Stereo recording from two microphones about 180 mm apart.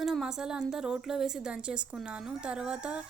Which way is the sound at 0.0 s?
Centre (ahead or behind).